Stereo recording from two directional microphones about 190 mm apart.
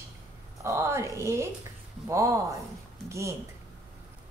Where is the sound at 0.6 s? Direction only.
15° right (ahead or behind).